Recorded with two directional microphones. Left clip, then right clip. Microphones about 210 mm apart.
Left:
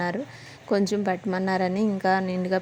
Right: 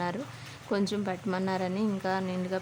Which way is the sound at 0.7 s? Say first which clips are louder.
Left 7 dB; 20° left (ahead or behind).